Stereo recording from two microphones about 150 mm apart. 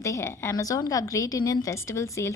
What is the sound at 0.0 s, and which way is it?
A woman's voice, 20° left (ahead or behind).